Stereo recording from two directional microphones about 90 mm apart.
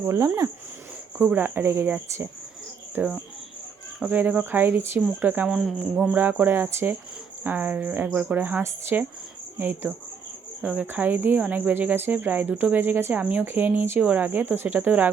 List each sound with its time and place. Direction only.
0.0 s speech: 30° right (ahead or behind)
1.2 s speech: 15° right (ahead or behind)
5.5 s cricket: 5° right (ahead or behind)
6.1 s speech: 20° right (ahead or behind)